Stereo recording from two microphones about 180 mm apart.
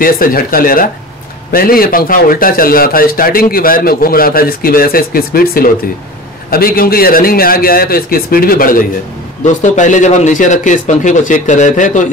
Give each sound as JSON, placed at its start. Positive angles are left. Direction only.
{"t": 0.0, "sound": "a man's voice", "side_deg": 50}